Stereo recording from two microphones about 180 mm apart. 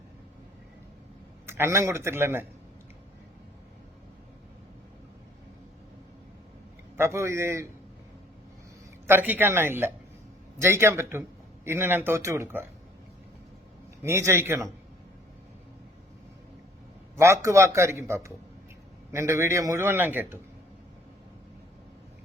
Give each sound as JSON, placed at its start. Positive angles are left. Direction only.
{"t": 1.5, "sound": "a man's voice", "side_deg": -15}
{"t": 6.9, "sound": "a man's voice", "side_deg": -15}
{"t": 9.0, "sound": "a man's voice", "side_deg": -10}
{"t": 14.0, "sound": "a man's voice", "side_deg": -15}
{"t": 17.2, "sound": "a man's voice", "side_deg": -15}